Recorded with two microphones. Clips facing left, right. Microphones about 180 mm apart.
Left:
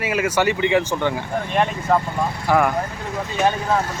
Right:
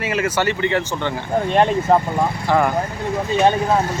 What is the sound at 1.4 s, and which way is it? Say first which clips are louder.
Speech: right 5 dB; 30° right (ahead or behind).